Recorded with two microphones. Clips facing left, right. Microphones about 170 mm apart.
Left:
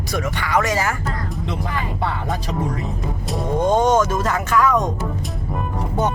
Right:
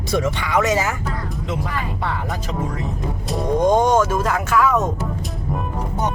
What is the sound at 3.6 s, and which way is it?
Speech, 15° right (ahead or behind).